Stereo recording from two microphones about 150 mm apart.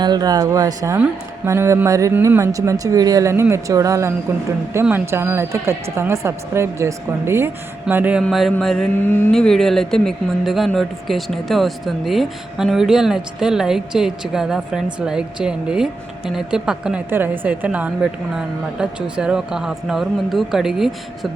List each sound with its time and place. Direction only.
0.0 s speech: 25° right (ahead or behind); by 8.2 s 10° right (ahead or behind)
8.2 s speech: centre (ahead or behind)